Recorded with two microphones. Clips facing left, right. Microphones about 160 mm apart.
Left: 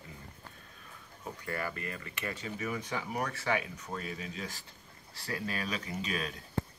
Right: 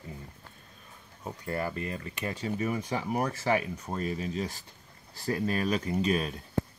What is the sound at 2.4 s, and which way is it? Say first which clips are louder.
Speech: right 8 dB; 35° right (ahead or behind).